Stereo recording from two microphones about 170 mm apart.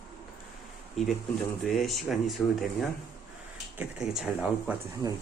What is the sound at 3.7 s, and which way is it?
Speech, 5° right (ahead or behind).